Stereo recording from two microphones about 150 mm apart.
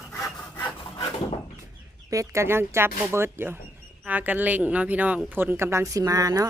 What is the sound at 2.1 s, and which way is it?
Speech, 20° right (ahead or behind).